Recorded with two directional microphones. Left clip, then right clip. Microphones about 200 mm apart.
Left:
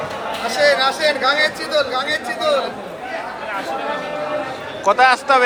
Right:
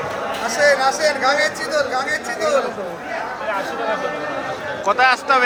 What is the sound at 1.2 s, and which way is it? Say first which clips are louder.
Speech: left 1 dB; 10° left (ahead or behind).